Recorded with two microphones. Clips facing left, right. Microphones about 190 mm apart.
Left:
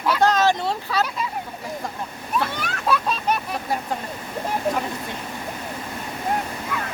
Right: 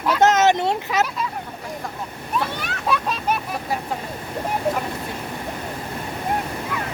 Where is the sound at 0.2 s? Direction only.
20° right (ahead or behind).